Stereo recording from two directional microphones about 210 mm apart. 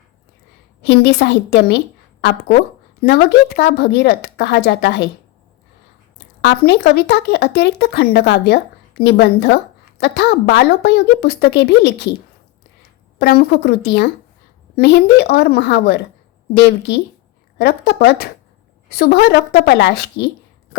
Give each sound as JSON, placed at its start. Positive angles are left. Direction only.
{"t": 0.8, "sound": "a woman's voice", "side_deg": 55}
{"t": 3.0, "sound": "speech", "side_deg": 50}
{"t": 6.4, "sound": "speech", "side_deg": 50}
{"t": 13.1, "sound": "a woman's voice", "side_deg": 50}